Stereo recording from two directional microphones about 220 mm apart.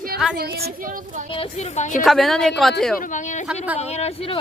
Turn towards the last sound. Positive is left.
turn(degrees=25)  # may be behind; listen again after turning